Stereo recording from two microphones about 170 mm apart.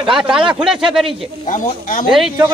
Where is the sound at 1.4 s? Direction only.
50° left (ahead or behind).